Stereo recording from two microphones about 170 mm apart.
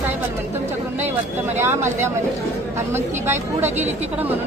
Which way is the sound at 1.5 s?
15° right (ahead or behind).